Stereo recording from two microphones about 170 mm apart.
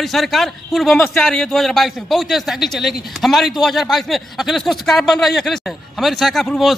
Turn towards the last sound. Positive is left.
turn(degrees=0)  # may be behind; listen again after turning